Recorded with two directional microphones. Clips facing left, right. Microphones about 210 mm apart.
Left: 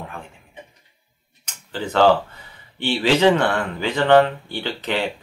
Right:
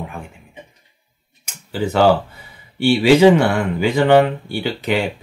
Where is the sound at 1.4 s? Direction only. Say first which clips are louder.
Right 6 dB; 10° right (ahead or behind).